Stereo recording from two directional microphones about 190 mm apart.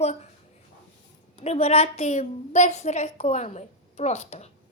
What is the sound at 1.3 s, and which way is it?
A woman's voice, 30° left (ahead or behind).